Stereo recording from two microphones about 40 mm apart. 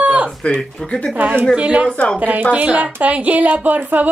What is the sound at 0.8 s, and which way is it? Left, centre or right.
Speech, left.